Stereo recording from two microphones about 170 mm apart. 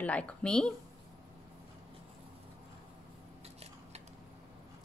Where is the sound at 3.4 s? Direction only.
35° right (ahead or behind).